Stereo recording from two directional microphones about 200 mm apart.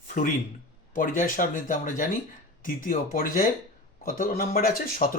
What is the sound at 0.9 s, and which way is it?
Speech, 45° left (ahead or behind).